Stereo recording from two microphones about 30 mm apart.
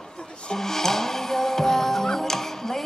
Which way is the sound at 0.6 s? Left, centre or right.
Centre.